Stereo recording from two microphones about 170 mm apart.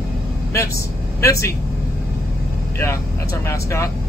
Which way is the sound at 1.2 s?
15° left (ahead or behind).